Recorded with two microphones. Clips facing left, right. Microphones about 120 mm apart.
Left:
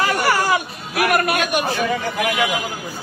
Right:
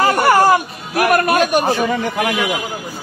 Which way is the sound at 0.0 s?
45° right (ahead or behind).